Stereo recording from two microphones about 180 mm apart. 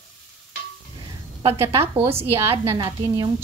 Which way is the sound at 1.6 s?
15° right (ahead or behind).